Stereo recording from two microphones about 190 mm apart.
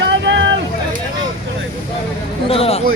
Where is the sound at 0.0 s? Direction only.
70° right (ahead or behind).